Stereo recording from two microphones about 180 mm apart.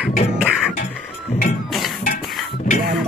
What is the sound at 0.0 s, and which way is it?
Beatboxing, 5° right (ahead or behind).